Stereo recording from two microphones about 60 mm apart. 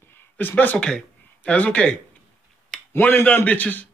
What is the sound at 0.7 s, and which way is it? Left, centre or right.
Speech, centre.